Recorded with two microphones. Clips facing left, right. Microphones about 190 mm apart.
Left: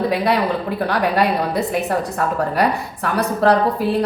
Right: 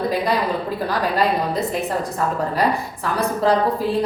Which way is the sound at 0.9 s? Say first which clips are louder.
Left 2 dB; 65° left (ahead or behind).